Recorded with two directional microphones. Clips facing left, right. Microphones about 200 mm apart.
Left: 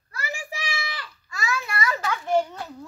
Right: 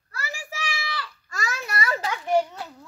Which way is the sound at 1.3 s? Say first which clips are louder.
Left 2 dB; 45° right (ahead or behind).